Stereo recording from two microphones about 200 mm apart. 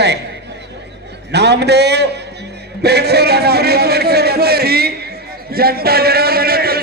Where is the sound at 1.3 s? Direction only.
55° right (ahead or behind).